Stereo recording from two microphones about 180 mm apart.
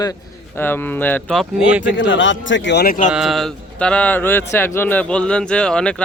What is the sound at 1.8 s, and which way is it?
A man's voice, 90° left.